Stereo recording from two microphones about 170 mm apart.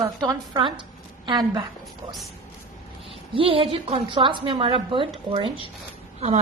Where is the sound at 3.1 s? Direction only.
30° right (ahead or behind).